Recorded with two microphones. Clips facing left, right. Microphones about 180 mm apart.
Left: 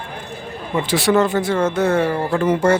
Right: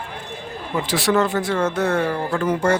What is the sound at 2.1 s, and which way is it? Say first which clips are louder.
Speech: left 3 dB; 15° left (ahead or behind).